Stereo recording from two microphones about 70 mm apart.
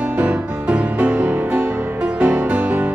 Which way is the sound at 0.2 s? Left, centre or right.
Centre.